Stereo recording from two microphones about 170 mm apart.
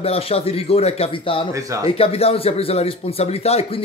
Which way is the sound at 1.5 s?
20° right (ahead or behind).